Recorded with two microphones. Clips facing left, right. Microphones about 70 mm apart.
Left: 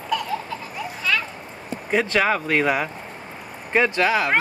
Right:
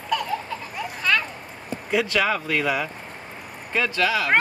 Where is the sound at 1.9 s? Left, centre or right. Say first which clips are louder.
Left 2 dB; left.